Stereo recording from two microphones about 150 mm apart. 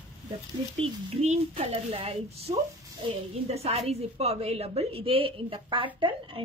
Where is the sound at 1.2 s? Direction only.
45° right (ahead or behind).